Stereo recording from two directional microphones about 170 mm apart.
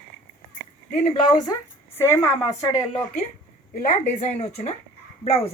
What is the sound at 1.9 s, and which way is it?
Speech, 15° left (ahead or behind).